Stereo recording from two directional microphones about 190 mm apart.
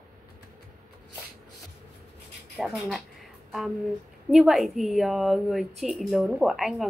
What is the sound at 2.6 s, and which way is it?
Speech, centre (ahead or behind).